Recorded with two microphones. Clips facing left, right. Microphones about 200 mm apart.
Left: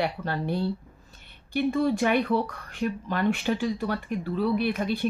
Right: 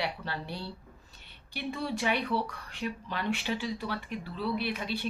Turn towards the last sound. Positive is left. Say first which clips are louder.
# left 7 dB
turn(degrees=50)  # may be behind; listen again after turning